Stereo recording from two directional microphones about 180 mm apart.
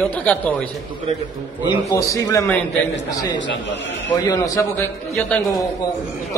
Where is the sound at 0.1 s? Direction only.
10° left (ahead or behind).